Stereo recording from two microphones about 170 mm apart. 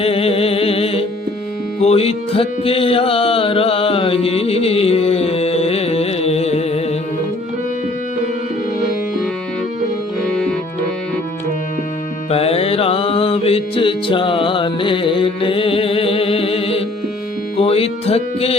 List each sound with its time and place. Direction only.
0.0 s music: 35° left (ahead or behind)
10.2 s music: 5° left (ahead or behind)
12.3 s mantra: 35° left (ahead or behind)
17.6 s music: 35° left (ahead or behind)